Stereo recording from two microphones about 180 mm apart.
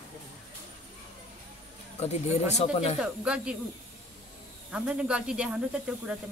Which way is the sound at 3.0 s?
5° right (ahead or behind).